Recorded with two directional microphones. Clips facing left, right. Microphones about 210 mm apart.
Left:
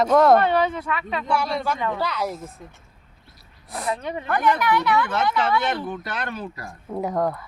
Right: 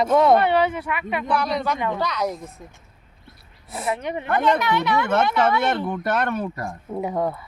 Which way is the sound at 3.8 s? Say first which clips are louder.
Right 2 dB; 20° right (ahead or behind).